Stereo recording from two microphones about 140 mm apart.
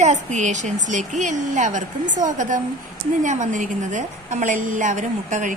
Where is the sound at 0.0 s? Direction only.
55° right (ahead or behind).